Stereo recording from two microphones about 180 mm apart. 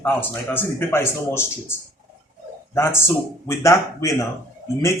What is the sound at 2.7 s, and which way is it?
Speech, 15° left (ahead or behind).